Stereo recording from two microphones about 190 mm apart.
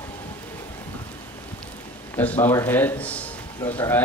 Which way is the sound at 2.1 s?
10° left (ahead or behind).